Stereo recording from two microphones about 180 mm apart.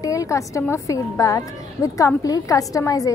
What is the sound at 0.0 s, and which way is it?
A woman's voice, 20° left (ahead or behind).